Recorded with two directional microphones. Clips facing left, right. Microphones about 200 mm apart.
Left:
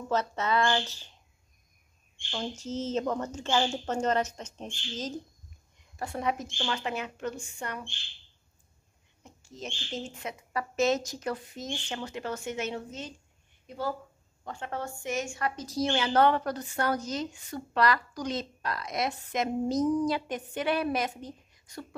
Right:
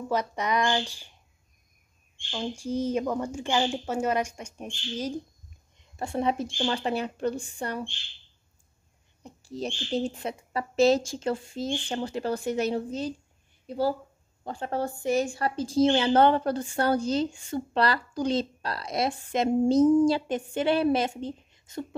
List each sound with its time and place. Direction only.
0.1 s speech: 15° right (ahead or behind)
2.3 s speech: 10° right (ahead or behind)
5.8 s speech: 25° right (ahead or behind)
9.2 s a woman's voice: 35° right (ahead or behind)